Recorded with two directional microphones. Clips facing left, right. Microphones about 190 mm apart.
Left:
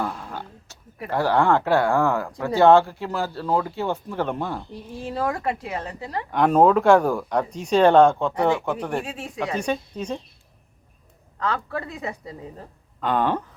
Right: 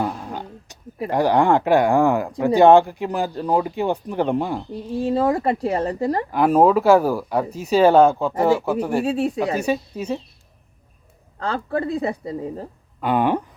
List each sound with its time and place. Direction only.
0.0 s a sound: 20° right (ahead or behind)
1.1 s speech: 15° right (ahead or behind)
4.9 s speech: 30° right (ahead or behind)
6.3 s speech: 5° right (ahead or behind)
9.0 s speech: 35° right (ahead or behind)
9.6 s speech: 5° right (ahead or behind)
11.3 s speech: 30° right (ahead or behind)
13.0 s speech: 10° right (ahead or behind)